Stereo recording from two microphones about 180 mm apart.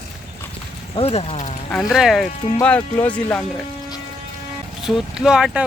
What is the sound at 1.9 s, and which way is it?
Speech, centre (ahead or behind).